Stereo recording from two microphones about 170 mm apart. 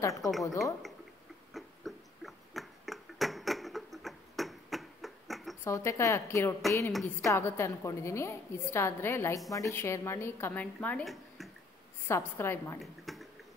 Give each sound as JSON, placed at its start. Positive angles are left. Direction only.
{"t": 0.0, "sound": "a woman's voice", "side_deg": 20}
{"t": 1.5, "sound": "a sound", "side_deg": 0}
{"t": 5.6, "sound": "a woman's voice", "side_deg": 15}
{"t": 6.9, "sound": "a woman's voice", "side_deg": 0}
{"t": 7.2, "sound": "a woman's voice", "side_deg": 15}
{"t": 12.1, "sound": "a woman's voice", "side_deg": 15}
{"t": 12.7, "sound": "a sound", "side_deg": 0}